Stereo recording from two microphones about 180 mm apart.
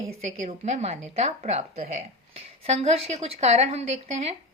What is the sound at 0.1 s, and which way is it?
A woman's voice, 35° right (ahead or behind).